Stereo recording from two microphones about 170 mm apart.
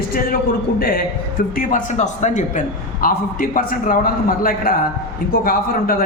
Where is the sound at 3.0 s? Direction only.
55° left (ahead or behind).